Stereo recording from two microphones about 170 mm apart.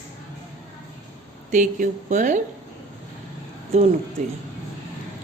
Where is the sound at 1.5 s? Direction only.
50° right (ahead or behind).